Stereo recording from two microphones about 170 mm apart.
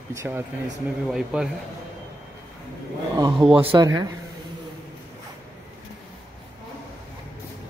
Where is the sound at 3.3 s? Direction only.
5° right (ahead or behind).